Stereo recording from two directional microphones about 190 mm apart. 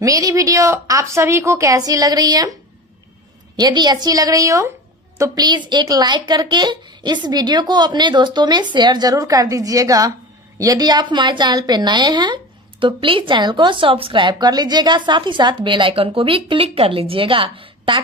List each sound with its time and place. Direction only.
0.0 s a woman's voice: 20° right (ahead or behind)
3.5 s a woman's voice: 20° right (ahead or behind)